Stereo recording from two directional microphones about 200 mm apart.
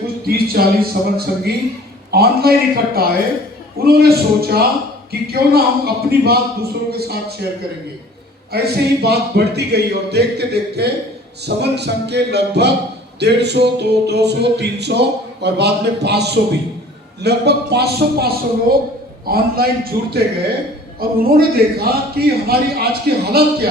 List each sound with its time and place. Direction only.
0.3 s speech: 50° right (ahead or behind)
8.5 s speech: 55° right (ahead or behind)
11.4 s music: 55° right (ahead or behind)
17.2 s speech: 55° right (ahead or behind)
21.2 s speech: 50° right (ahead or behind)